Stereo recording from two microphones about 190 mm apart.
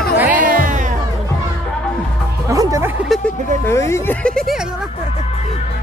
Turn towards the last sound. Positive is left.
turn(degrees=5)  # may be behind; listen again after turning